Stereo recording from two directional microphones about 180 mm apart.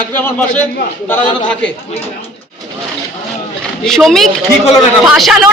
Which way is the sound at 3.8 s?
Centre (ahead or behind).